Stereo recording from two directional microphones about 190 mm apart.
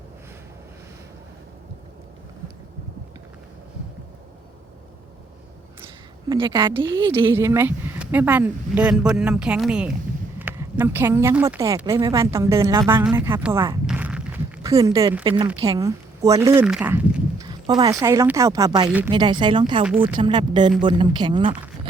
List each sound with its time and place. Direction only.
6.2 s a woman's voice: 25° right (ahead or behind)
7.1 s speech: 15° right (ahead or behind)
13.8 s walk: 5° right (ahead or behind)
14.6 s a woman's voice: 15° right (ahead or behind)
18.9 s speech: 10° right (ahead or behind)
19.1 s a woman's voice: 25° right (ahead or behind)